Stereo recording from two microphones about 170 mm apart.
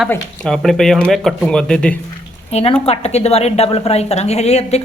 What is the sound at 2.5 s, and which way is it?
A woman's voice, 35° left (ahead or behind).